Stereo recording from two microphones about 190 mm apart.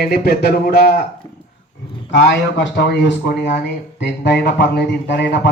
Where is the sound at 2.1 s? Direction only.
65° left (ahead or behind).